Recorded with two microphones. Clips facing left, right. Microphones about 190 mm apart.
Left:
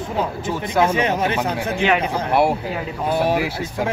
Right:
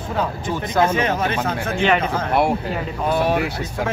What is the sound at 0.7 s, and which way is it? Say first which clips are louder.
Speech: even; 15° left (ahead or behind).